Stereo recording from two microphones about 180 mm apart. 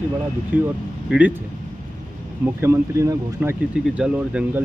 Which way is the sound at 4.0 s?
5° right (ahead or behind).